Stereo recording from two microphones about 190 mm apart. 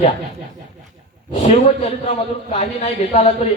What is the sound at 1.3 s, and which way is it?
A man's voice, 35° left (ahead or behind).